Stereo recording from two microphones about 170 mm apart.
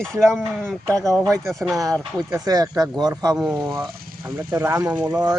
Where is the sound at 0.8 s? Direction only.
20° right (ahead or behind).